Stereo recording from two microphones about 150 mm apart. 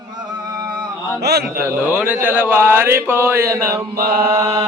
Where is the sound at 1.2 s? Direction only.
90° right.